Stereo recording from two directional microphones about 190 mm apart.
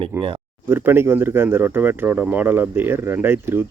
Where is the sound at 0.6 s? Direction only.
10° right (ahead or behind).